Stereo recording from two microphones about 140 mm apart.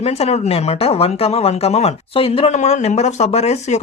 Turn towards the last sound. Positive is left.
turn(degrees=50)  # may be behind; listen again after turning